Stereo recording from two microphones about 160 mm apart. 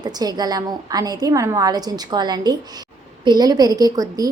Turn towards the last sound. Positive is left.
turn(degrees=-25)  # may be behind; listen again after turning